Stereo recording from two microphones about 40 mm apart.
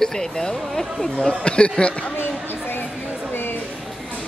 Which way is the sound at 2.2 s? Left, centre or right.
Left.